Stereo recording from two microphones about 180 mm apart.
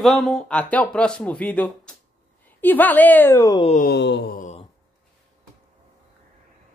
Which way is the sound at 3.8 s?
70° left (ahead or behind).